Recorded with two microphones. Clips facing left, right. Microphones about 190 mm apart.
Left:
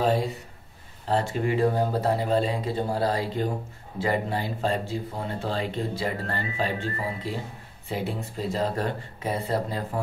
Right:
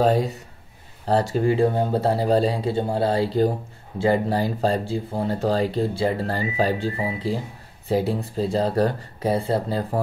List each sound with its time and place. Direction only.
0.0 s speech: 40° right (ahead or behind)